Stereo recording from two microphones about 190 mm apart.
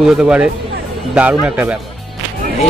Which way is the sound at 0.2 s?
5° right (ahead or behind).